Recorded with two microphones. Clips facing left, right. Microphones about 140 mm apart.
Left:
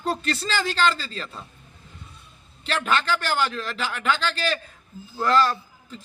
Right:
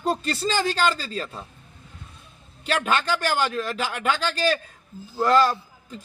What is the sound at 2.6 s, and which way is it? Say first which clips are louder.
A man's voice: right 1 dB; 40° right (ahead or behind).